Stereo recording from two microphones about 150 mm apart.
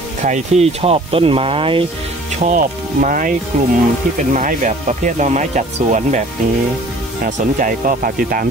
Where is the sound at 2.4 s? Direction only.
60° right (ahead or behind).